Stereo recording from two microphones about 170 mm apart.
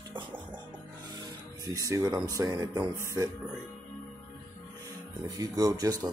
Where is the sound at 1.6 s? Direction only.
20° right (ahead or behind).